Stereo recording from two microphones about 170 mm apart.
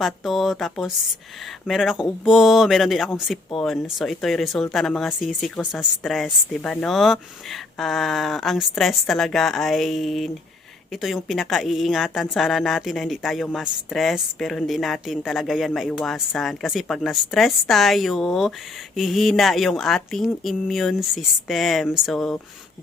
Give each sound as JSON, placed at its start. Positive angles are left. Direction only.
{"t": 0.0, "sound": "a woman's voice", "side_deg": 0}